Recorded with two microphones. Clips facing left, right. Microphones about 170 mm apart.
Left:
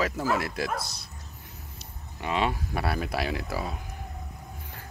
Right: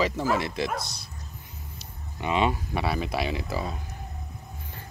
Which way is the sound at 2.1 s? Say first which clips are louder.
Right 3 dB; centre (ahead or behind).